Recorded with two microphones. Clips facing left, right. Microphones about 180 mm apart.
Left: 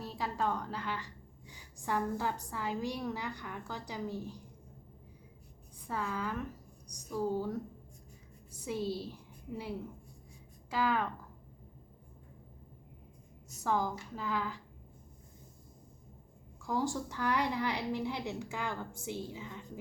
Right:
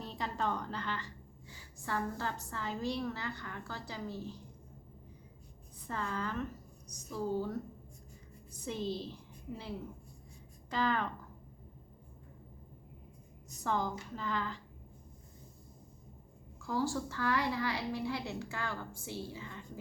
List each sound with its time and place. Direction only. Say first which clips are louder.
0.0 s a woman's voice: left 2 dB; 5° left (ahead or behind)
5.9 s a woman's voice: left 1 dB; 5° left (ahead or behind)
10.7 s a woman's voice: left 1 dB; 5° left (ahead or behind)
13.6 s a woman's voice: left 2 dB; 10° left (ahead or behind)
16.6 s a woman's voice: even; 15° left (ahead or behind)